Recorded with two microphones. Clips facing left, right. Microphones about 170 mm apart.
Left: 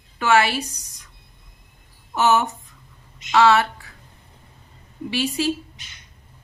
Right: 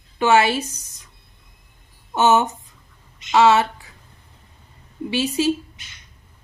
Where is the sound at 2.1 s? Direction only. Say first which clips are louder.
Right 2 dB; 20° right (ahead or behind).